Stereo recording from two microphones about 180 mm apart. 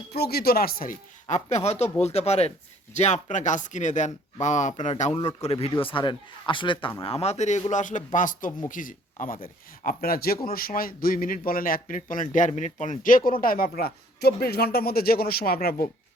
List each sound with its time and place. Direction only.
0.1 s a man's voice: 60° left (ahead or behind)